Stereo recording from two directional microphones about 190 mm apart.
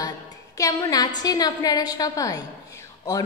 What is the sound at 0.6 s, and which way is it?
A woman's voice, 15° left (ahead or behind).